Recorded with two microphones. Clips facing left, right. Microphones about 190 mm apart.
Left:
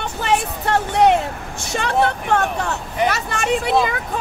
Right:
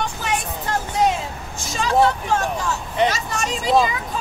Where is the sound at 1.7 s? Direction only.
65° left (ahead or behind).